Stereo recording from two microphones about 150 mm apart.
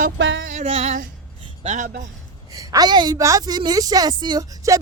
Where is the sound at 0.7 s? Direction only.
45° right (ahead or behind).